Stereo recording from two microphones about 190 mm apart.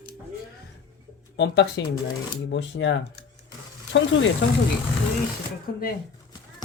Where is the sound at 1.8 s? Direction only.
65° left (ahead or behind).